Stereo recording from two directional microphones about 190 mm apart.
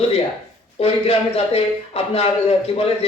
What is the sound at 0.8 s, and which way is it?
Speech, 30° left (ahead or behind).